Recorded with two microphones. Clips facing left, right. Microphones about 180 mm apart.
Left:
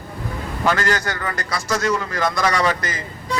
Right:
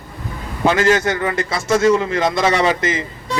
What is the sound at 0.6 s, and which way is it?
A man's voice, 20° right (ahead or behind).